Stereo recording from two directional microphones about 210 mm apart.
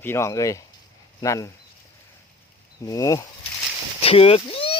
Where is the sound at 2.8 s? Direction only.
15° left (ahead or behind).